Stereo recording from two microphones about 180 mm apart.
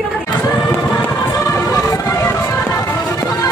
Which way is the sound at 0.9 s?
20° left (ahead or behind).